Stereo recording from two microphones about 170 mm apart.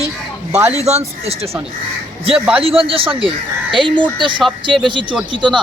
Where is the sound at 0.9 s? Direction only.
40° right (ahead or behind).